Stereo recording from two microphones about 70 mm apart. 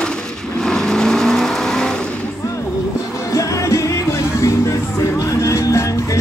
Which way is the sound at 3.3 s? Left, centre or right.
Left.